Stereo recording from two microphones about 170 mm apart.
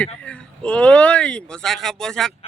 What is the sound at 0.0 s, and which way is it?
Speech, 5° left (ahead or behind).